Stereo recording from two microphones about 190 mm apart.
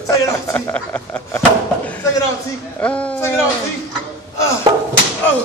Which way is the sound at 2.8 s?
5° left (ahead or behind).